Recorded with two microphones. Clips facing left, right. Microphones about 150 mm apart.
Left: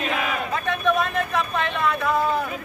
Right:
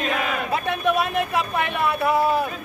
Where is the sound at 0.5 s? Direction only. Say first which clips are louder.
Right 1 dB; 15° right (ahead or behind).